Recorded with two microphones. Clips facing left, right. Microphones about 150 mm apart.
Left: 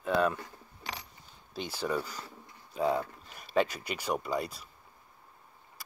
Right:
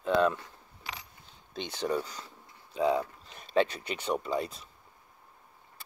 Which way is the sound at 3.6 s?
10° left (ahead or behind).